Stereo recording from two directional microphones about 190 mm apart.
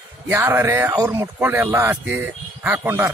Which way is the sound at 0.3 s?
15° right (ahead or behind).